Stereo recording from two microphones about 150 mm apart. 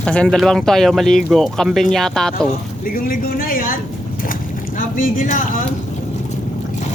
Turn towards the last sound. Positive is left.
turn(degrees=60)  # may be behind; listen again after turning